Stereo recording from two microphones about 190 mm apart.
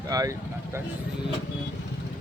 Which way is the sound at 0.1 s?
15° right (ahead or behind).